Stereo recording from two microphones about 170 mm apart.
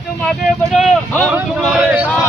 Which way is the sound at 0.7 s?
Centre (ahead or behind).